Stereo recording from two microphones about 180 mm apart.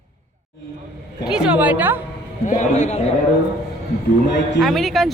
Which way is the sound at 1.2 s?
5° right (ahead or behind).